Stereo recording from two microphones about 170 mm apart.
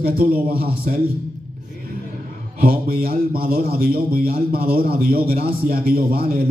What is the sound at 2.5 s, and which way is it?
A man's voice, 60° right (ahead or behind).